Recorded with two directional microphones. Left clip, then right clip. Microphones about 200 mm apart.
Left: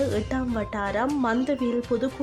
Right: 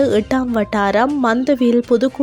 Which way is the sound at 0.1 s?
35° right (ahead or behind).